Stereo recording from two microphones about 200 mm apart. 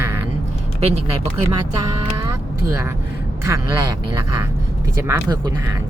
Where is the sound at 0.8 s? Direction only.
30° right (ahead or behind).